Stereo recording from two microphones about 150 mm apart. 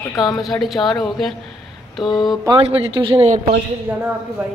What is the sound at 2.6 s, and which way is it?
Speech, 40° right (ahead or behind).